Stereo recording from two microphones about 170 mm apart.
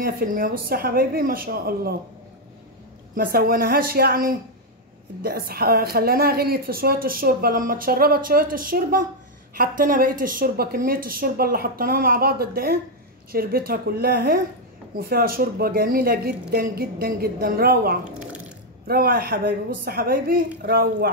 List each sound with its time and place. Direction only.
0.0 s a woman's voice: 60° right (ahead or behind)
3.2 s a woman's voice: 60° right (ahead or behind)